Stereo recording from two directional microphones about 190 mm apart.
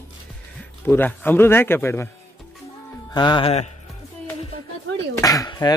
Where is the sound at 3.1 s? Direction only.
20° left (ahead or behind).